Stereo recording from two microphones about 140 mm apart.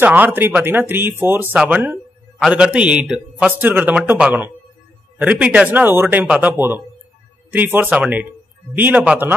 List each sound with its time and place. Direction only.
0.0 s speech: 15° right (ahead or behind)
1.6 s a sound: 10° right (ahead or behind)
2.5 s speech: 10° right (ahead or behind)